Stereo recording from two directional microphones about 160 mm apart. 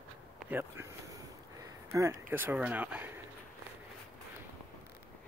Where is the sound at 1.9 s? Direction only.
20° right (ahead or behind).